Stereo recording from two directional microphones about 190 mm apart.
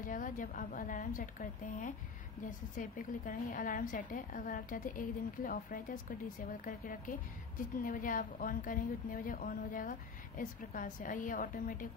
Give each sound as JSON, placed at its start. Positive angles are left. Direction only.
{"t": 0.0, "sound": "a woman's voice", "side_deg": 45}